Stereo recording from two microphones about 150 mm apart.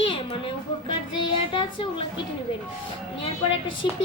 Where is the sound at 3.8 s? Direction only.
30° left (ahead or behind).